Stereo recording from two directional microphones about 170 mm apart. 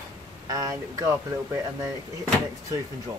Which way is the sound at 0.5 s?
20° right (ahead or behind).